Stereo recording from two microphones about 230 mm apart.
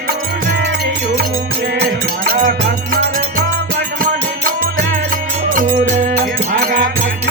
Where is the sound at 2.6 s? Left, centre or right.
Right.